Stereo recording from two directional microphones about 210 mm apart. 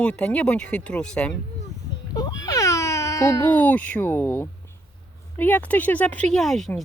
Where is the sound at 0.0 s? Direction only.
5° left (ahead or behind).